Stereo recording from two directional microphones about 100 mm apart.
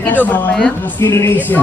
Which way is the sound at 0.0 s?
15° left (ahead or behind).